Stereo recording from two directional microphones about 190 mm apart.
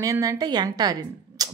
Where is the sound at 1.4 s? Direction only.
20° right (ahead or behind).